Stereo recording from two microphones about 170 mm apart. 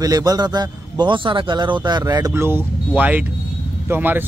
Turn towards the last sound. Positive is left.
turn(degrees=-10)  # may be behind; listen again after turning